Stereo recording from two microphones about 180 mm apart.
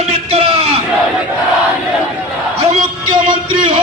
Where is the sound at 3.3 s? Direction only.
25° right (ahead or behind).